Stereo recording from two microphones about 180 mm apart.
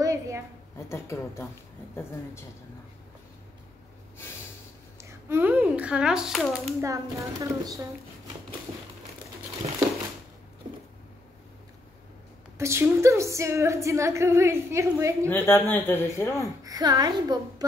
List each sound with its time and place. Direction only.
0.0 s a sound: 15° right (ahead or behind)
0.7 s speech: 15° left (ahead or behind)
4.9 s speech: 15° right (ahead or behind)
6.8 s a woman's voice: 15° right (ahead or behind)
12.5 s a woman's voice: 15° right (ahead or behind)
15.2 s speech: 10° left (ahead or behind)
16.6 s a woman's voice: 20° right (ahead or behind)